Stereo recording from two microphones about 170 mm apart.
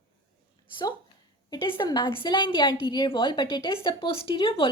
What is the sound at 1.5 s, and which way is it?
A woman's voice, 25° left (ahead or behind).